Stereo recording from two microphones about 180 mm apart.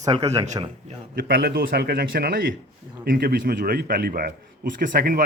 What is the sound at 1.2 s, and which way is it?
A man's voice, 55° right (ahead or behind).